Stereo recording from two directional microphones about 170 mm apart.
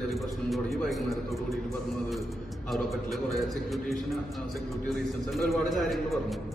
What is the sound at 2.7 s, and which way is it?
A man's voice, centre (ahead or behind).